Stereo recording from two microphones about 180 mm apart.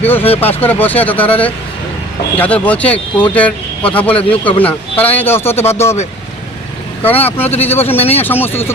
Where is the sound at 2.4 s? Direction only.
10° left (ahead or behind).